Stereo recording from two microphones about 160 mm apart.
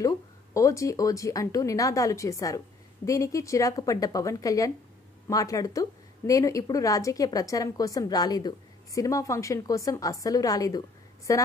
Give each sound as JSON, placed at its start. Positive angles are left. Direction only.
{"t": 0.6, "sound": "a woman's voice", "side_deg": 20}